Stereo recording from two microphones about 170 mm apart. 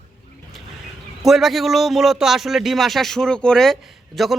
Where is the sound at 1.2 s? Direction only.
Centre (ahead or behind).